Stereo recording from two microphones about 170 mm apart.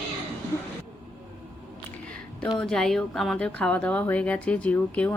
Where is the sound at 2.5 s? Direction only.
5° left (ahead or behind).